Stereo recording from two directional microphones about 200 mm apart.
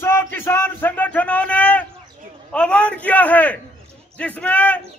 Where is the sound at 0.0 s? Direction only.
10° left (ahead or behind).